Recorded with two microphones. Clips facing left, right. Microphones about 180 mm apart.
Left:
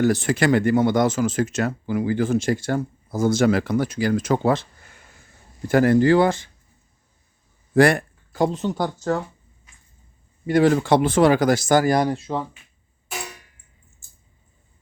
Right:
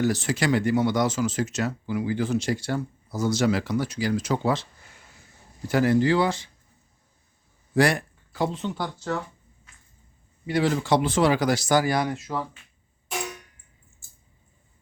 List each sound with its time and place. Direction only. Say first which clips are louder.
0.0 s speech: left 5 dB; 55° left (ahead or behind)
5.6 s speech: left 5 dB; 50° left (ahead or behind)
7.7 s speech: left 5 dB; 55° left (ahead or behind)
10.4 s speech: left 7 dB; 50° left (ahead or behind); by 12.5 s 25° left (ahead or behind)